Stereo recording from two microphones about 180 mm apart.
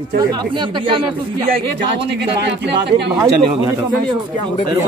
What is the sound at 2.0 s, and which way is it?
Speech, 70° right (ahead or behind).